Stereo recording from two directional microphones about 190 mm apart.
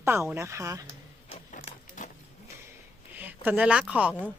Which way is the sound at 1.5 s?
40° left (ahead or behind).